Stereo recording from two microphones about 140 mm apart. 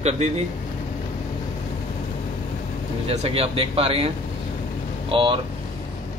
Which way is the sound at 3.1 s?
45° right (ahead or behind).